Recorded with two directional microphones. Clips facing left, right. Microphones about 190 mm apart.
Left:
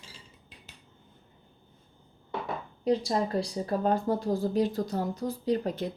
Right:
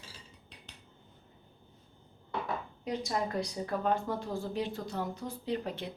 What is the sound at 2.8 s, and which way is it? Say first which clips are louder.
Speech: left 7 dB; 35° left (ahead or behind).